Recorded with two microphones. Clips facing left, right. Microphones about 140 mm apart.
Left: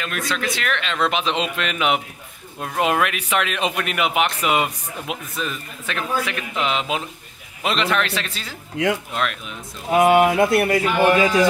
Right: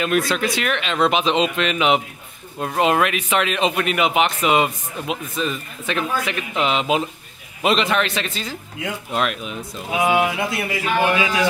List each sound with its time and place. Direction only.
0.0 s speech: 15° right (ahead or behind)
8.8 s speech: 85° left
9.8 s a man's voice: 50° left (ahead or behind)